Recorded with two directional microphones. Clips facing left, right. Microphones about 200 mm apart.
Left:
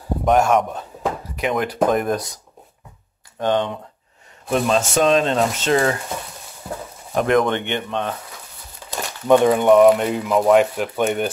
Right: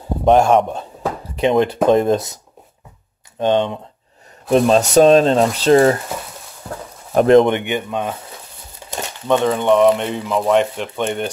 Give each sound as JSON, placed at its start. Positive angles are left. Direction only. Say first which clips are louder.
{"t": 0.2, "sound": "a man's voice", "louder": "right 4 dB", "side_deg": -30}
{"t": 3.3, "sound": "a man's voice", "louder": "right 3 dB", "side_deg": -20}
{"t": 4.5, "sound": "speech", "louder": "right 6 dB", "side_deg": -35}
{"t": 6.7, "sound": "a sound", "louder": "even", "side_deg": 5}
{"t": 7.2, "sound": "speech", "louder": "right 7 dB", "side_deg": -30}
{"t": 7.4, "sound": "speech", "louder": "right 3 dB", "side_deg": -15}
{"t": 9.3, "sound": "speech", "louder": "left 2 dB", "side_deg": 10}